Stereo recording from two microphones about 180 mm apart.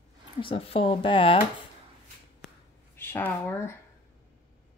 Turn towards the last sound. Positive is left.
turn(degrees=15)  # may be behind; listen again after turning